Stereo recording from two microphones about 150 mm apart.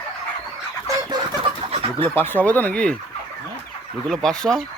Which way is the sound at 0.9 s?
20° right (ahead or behind).